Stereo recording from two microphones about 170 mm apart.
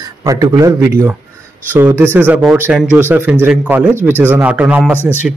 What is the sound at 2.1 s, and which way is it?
Speech, 10° right (ahead or behind).